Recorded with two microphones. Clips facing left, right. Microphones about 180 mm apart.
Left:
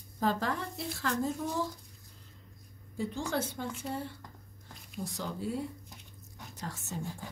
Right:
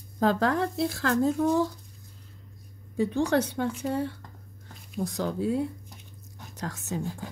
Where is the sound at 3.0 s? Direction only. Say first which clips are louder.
Right 9 dB; 70° right (ahead or behind).